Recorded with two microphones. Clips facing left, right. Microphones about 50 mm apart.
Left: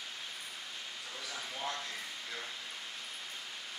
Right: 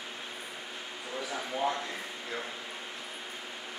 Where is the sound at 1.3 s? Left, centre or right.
Right.